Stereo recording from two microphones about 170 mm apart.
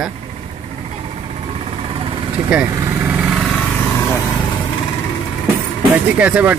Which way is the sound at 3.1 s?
5° right (ahead or behind).